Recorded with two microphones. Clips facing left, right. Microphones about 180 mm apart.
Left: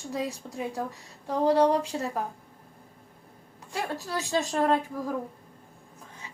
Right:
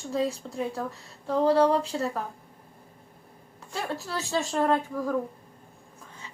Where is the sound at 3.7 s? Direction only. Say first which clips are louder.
Even; 15° left (ahead or behind).